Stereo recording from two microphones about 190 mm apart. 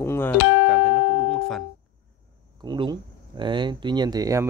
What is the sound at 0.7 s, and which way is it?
Music, 5° left (ahead or behind).